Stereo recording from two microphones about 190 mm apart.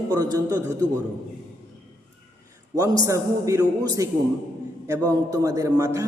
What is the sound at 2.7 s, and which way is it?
A man's voice, 20° right (ahead or behind).